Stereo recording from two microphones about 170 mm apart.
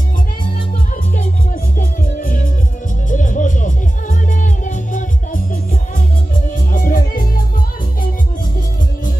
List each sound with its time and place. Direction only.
1.1 s music: 50° left (ahead or behind)